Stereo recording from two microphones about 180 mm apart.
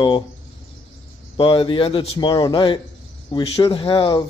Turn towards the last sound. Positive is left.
turn(degrees=30)  # may be behind; listen again after turning